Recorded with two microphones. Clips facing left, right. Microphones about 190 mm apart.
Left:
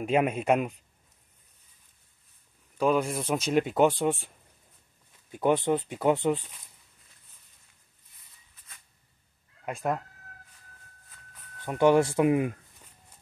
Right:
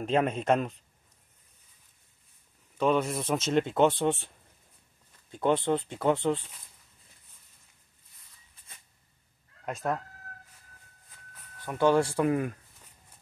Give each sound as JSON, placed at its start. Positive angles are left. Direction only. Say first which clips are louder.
{"t": 0.0, "sound": "speech", "louder": "left 1 dB", "side_deg": 10}
{"t": 2.8, "sound": "speech", "louder": "left 1 dB", "side_deg": 5}
{"t": 5.3, "sound": "speech", "louder": "left 1 dB", "side_deg": 15}
{"t": 9.7, "sound": "speech", "louder": "left 1 dB", "side_deg": 10}
{"t": 11.6, "sound": "speech", "louder": "left 3 dB", "side_deg": 15}